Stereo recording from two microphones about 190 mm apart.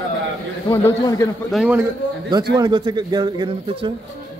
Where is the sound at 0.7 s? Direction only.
15° left (ahead or behind).